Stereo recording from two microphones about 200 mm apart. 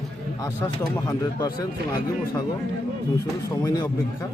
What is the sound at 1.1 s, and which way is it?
Speech, 20° left (ahead or behind).